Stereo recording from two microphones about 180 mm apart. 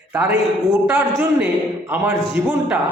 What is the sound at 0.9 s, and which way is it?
A man's voice, 10° right (ahead or behind).